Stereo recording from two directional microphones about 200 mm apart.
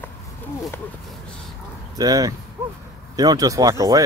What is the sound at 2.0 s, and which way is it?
Speech, 20° right (ahead or behind).